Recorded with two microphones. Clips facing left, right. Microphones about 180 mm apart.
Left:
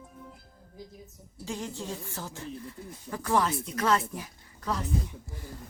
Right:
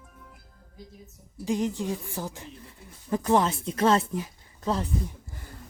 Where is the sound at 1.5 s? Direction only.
15° right (ahead or behind).